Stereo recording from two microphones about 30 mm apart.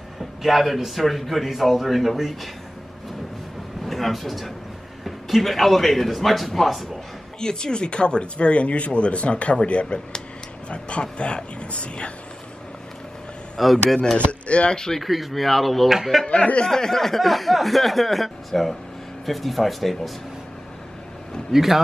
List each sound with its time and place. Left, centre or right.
0.5 s speech: centre
3.8 s speech: centre
7.3 s speech: left
13.6 s speech: centre
14.1 s speech: left
14.7 s speech: left
15.0 s speech: centre
15.9 s speech: centre
16.3 s speech: left
16.6 s speech: centre
21.5 s speech: centre